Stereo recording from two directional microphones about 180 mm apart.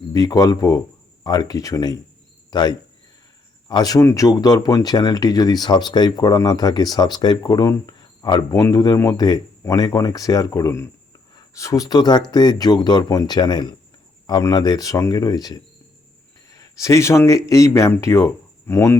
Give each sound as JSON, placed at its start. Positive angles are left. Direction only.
{"t": 0.1, "sound": "speech", "side_deg": 20}